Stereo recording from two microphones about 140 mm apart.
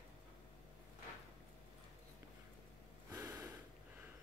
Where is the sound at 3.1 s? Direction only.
20° right (ahead or behind).